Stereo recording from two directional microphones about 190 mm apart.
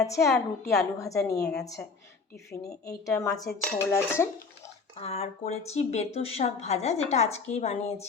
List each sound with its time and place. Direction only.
0.0 s a woman's voice: 15° left (ahead or behind)
2.5 s a woman's voice: 15° left (ahead or behind)
4.9 s speech: 30° left (ahead or behind)